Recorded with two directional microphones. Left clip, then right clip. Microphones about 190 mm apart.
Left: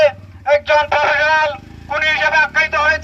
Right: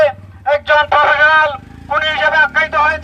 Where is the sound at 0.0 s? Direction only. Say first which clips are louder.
Right 1 dB; 10° left (ahead or behind).